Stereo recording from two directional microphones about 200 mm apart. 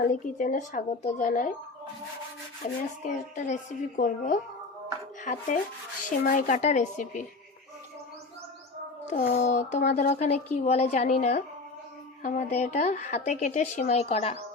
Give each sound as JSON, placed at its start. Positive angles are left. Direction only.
{"t": 0.0, "sound": "speech", "side_deg": 40}
{"t": 3.0, "sound": "speech", "side_deg": 40}
{"t": 9.0, "sound": "speech", "side_deg": 35}